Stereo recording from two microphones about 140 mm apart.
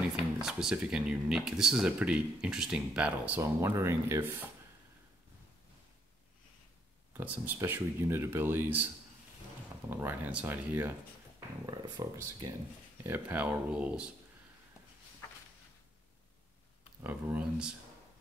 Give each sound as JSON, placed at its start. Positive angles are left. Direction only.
{"t": 0.0, "sound": "speech", "side_deg": -5}
{"t": 7.2, "sound": "speech", "side_deg": -15}
{"t": 11.3, "sound": "speech", "side_deg": -25}
{"t": 13.0, "sound": "speech", "side_deg": -15}
{"t": 17.0, "sound": "speech", "side_deg": -10}